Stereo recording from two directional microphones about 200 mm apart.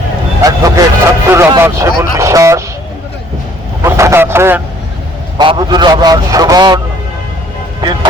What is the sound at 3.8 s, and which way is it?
Speech, 15° right (ahead or behind).